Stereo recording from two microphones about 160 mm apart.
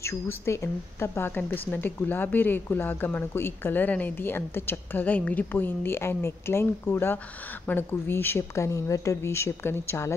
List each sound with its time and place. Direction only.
0.0 s a woman's voice: 15° left (ahead or behind)